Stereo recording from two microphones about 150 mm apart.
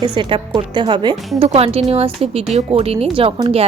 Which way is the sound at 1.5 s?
40° right (ahead or behind).